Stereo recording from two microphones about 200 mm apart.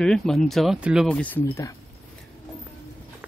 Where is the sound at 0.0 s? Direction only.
Centre (ahead or behind).